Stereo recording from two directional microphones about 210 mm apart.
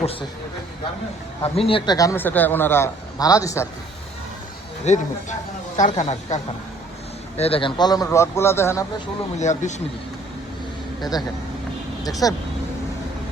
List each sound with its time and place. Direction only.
0.0 s a man's voice: 25° left (ahead or behind)
1.4 s a man's voice: 25° left (ahead or behind)
4.9 s a man's voice: 35° left (ahead or behind); by 8.9 s 15° left (ahead or behind)
9.4 s speech: 35° left (ahead or behind)
12.2 s a man's voice: 15° left (ahead or behind)